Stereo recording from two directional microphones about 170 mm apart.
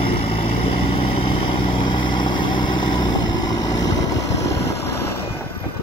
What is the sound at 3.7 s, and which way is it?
Vehicle, 90° left.